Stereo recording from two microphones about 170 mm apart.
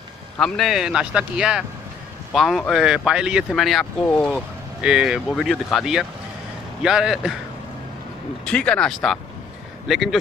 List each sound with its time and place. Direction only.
0.4 s speech: centre (ahead or behind)
8.5 s speech: 5° left (ahead or behind)